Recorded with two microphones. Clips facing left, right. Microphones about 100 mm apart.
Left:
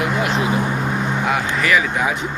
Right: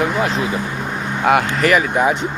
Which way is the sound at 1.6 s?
40° right (ahead or behind).